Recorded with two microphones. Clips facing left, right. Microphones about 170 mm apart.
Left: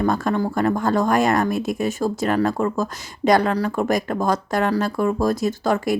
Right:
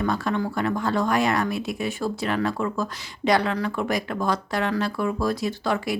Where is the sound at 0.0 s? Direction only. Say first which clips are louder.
Left 4 dB; 40° left (ahead or behind).